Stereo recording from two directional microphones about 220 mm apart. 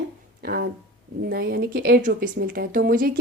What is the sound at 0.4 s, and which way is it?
Speech, 45° right (ahead or behind).